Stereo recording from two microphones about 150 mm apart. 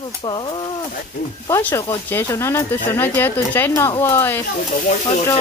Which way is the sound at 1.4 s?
20° left (ahead or behind).